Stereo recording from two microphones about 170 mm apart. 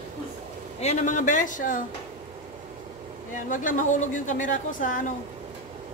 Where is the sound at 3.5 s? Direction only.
50° left (ahead or behind).